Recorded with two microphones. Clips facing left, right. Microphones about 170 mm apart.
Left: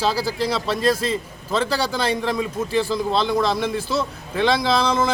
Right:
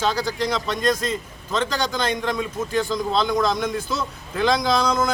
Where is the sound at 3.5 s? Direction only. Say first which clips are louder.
Left 2 dB; 30° left (ahead or behind).